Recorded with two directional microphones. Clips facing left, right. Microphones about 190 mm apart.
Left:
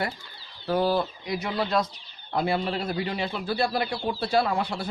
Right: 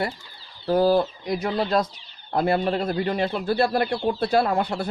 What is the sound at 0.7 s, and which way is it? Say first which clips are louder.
Speech: right 5 dB; 40° right (ahead or behind).